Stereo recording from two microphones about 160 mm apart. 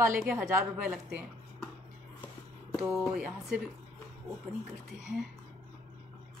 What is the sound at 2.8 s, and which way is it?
Speech, 10° right (ahead or behind).